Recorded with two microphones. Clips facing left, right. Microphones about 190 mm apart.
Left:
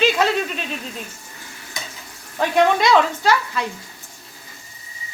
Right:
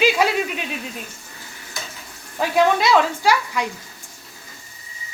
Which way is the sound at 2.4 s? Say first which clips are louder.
Left 1 dB; 5° right (ahead or behind).